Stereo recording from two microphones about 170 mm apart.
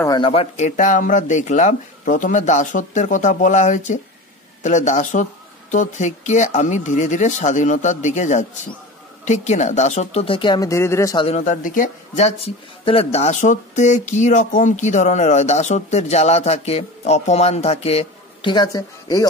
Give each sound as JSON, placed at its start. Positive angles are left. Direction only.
{"t": 0.2, "sound": "a man's voice", "side_deg": 35}
{"t": 11.1, "sound": "a man's voice", "side_deg": 40}